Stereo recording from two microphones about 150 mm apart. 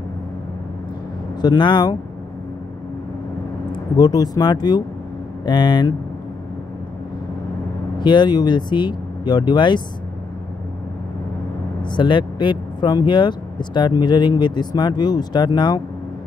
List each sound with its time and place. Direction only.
1.4 s speech: 30° left (ahead or behind)
3.9 s speech: 25° left (ahead or behind)
8.0 s speech: 30° left (ahead or behind)
11.8 s speech: 30° left (ahead or behind)